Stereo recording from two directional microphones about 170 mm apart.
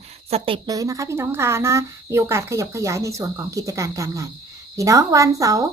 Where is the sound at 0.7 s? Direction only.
20° right (ahead or behind).